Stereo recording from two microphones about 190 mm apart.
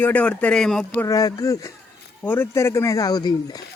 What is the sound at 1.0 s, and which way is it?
Speech, 20° left (ahead or behind).